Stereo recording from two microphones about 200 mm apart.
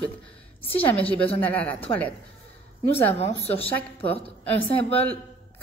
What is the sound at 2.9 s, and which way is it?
A woman's voice, 30° left (ahead or behind).